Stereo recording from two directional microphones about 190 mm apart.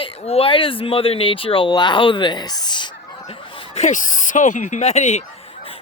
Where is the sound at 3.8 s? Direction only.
40° left (ahead or behind).